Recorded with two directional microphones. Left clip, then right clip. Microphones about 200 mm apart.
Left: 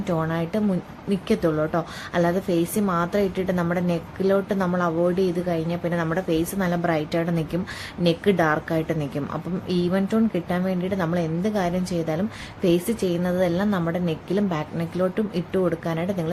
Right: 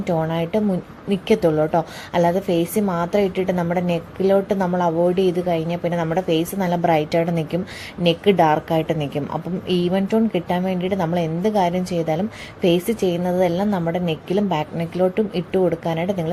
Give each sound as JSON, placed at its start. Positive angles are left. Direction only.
{"t": 0.0, "sound": "a woman's voice", "side_deg": -5}